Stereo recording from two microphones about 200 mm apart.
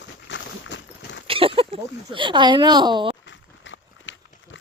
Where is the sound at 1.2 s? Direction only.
25° right (ahead or behind).